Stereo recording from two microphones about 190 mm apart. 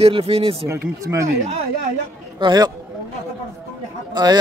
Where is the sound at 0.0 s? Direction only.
30° right (ahead or behind).